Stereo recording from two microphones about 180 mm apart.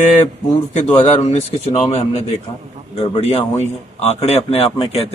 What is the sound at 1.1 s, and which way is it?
Speech, 40° left (ahead or behind).